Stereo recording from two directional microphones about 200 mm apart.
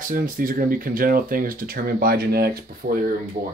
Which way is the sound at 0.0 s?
45° right (ahead or behind).